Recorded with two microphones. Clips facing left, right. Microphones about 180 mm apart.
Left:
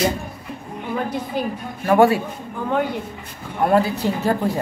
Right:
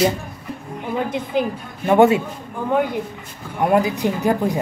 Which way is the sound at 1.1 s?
20° right (ahead or behind).